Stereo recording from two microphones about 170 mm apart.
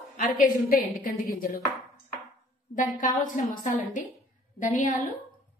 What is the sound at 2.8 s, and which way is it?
Speech, 50° left (ahead or behind).